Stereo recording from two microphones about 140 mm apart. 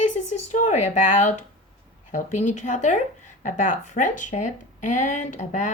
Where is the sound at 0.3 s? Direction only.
60° left (ahead or behind).